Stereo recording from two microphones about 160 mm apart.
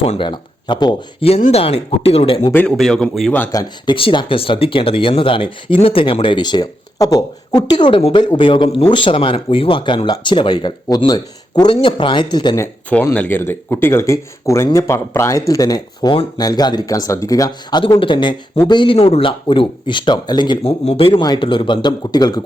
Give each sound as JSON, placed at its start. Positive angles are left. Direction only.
{"t": 0.0, "sound": "speech", "side_deg": 35}
{"t": 1.3, "sound": "speech", "side_deg": 40}
{"t": 2.5, "sound": "a man's voice", "side_deg": 10}
{"t": 3.5, "sound": "speech", "side_deg": 25}
{"t": 12.9, "sound": "speech", "side_deg": 10}